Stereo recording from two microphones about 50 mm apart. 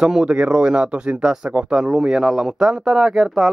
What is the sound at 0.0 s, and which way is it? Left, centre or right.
Speech, centre.